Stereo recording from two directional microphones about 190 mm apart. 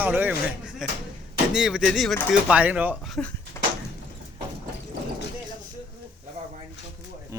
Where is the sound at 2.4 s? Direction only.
5° right (ahead or behind).